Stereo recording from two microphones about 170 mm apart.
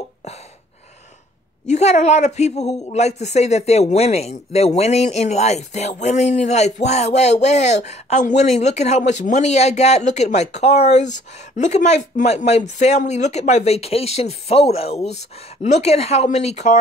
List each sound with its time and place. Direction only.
1.7 s speech: 40° left (ahead or behind)